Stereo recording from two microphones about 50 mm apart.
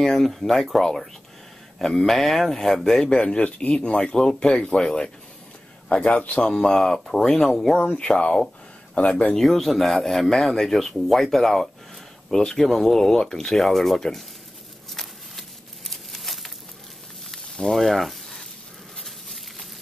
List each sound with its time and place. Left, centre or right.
0.0 s a man's voice: centre; by 6.4 s left
6.4 s speech: centre
7.7 s a man's voice: centre
9.3 s speech: centre
14.9 s a sound: centre